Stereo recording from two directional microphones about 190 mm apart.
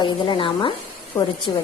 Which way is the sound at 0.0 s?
25° left (ahead or behind).